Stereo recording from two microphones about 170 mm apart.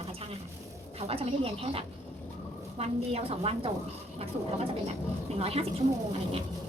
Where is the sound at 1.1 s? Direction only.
35° right (ahead or behind).